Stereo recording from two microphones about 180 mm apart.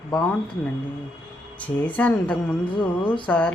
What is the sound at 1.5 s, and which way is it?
A woman's voice, 10° left (ahead or behind).